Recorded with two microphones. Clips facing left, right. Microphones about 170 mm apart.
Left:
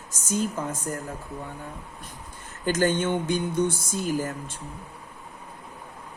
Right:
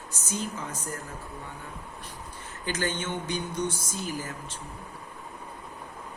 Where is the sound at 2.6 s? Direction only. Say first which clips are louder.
Left 8 dB; 50° left (ahead or behind).